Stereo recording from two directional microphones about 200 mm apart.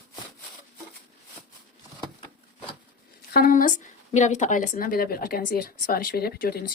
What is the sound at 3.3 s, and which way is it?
Speech, 45° left (ahead or behind).